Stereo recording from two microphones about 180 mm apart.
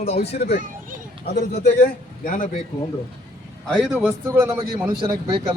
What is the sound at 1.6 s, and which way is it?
A man's voice, 60° left (ahead or behind).